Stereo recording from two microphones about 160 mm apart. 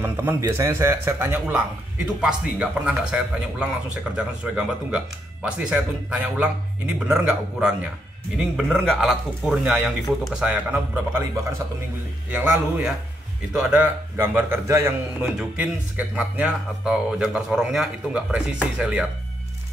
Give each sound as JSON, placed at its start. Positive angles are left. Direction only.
{"t": 0.0, "sound": "a man's voice", "side_deg": -15}